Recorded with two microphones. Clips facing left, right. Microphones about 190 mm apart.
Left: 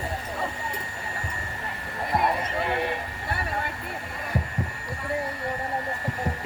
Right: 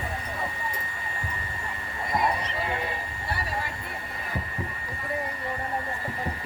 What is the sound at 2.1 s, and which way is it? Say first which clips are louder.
Basketball bounce: left 2 dB; 55° left (ahead or behind).